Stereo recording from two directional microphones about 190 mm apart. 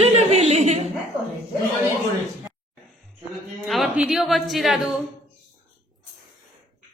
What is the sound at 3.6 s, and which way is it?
A woman's voice, centre (ahead or behind).